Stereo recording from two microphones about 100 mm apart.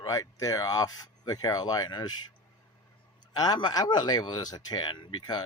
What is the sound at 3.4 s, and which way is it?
Speech, 45° left (ahead or behind).